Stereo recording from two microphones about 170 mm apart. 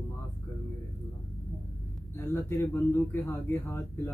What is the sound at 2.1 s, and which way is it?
Speech, 15° left (ahead or behind).